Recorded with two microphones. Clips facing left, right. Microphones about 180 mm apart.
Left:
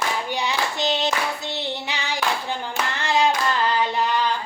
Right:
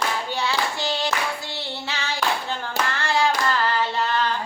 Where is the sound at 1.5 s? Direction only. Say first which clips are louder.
Left 2 dB; 15° left (ahead or behind).